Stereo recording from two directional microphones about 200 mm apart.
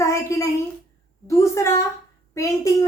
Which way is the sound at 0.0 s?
15° left (ahead or behind).